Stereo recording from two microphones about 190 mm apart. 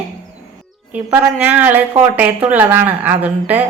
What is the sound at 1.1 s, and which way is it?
A woman's voice, 10° right (ahead or behind).